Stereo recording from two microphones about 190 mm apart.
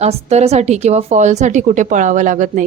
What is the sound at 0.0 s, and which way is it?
A woman's voice, 35° right (ahead or behind).